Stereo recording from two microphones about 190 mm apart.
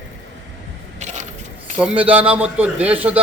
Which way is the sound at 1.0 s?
40° right (ahead or behind).